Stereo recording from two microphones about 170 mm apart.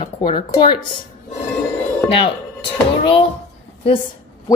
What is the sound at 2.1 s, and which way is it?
Speech, 30° left (ahead or behind).